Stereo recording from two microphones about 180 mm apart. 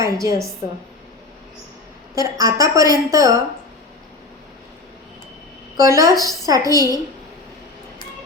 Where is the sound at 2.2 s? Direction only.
20° right (ahead or behind).